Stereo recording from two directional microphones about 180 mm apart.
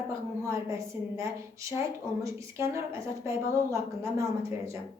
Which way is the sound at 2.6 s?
15° right (ahead or behind).